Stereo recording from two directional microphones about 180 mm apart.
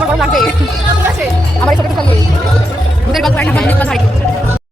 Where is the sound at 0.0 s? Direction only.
5° right (ahead or behind).